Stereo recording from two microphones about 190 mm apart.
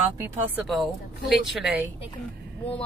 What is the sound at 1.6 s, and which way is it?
Speech, 10° right (ahead or behind).